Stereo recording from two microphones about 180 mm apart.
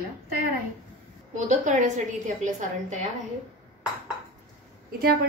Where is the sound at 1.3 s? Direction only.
45° right (ahead or behind).